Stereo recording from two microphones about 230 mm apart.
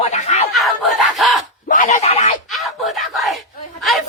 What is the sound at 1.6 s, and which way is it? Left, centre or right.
Speech, left.